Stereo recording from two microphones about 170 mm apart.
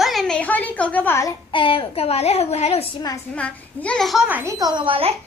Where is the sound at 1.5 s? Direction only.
30° left (ahead or behind).